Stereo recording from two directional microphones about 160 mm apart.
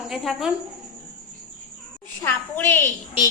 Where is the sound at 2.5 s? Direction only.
15° left (ahead or behind).